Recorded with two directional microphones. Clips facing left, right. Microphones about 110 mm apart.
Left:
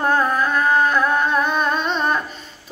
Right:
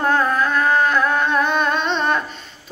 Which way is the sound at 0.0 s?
10° left (ahead or behind).